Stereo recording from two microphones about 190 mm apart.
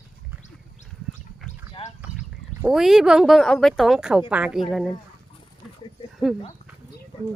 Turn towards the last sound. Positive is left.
turn(degrees=0)  # may be behind; listen again after turning